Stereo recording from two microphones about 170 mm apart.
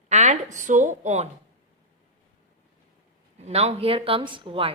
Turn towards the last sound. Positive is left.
turn(degrees=-30)  # may be behind; listen again after turning